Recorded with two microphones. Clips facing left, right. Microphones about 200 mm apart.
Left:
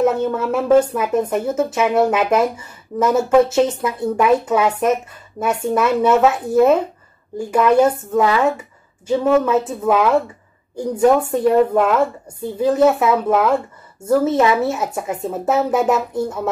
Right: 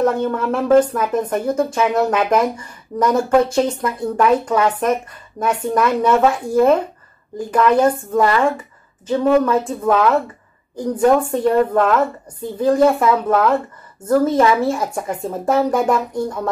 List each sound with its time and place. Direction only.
0.0 s speech: 10° left (ahead or behind)